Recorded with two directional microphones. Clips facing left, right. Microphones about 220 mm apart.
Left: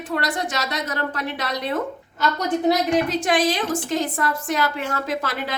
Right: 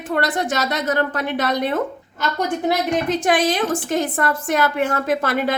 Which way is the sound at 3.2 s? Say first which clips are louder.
Right 2 dB; 55° right (ahead or behind).